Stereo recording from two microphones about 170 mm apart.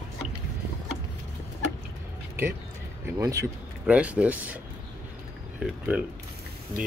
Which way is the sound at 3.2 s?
20° right (ahead or behind).